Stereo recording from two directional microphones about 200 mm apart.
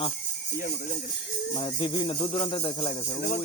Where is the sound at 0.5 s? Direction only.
45° left (ahead or behind).